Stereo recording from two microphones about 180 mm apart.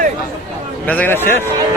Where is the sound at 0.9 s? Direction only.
10° left (ahead or behind).